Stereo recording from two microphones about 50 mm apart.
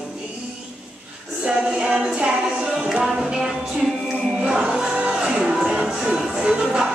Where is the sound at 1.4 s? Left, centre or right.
Centre.